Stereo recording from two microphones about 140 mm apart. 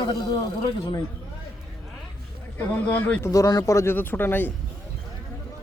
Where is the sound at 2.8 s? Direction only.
10° left (ahead or behind).